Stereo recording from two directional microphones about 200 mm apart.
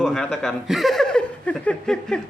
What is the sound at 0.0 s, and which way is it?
Speech, 5° left (ahead or behind).